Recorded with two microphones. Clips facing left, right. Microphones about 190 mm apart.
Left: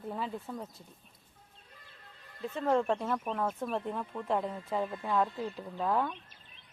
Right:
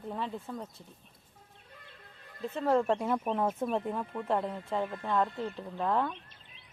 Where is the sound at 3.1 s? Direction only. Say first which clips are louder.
Right 3 dB; 20° right (ahead or behind).